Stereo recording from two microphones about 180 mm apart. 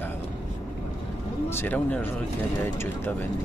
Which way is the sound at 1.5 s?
10° left (ahead or behind).